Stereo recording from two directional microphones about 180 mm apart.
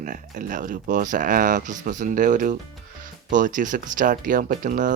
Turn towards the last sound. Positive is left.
turn(degrees=-45)  # may be behind; listen again after turning